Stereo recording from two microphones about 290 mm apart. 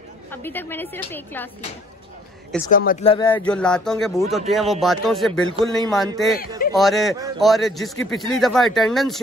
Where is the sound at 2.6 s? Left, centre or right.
Left.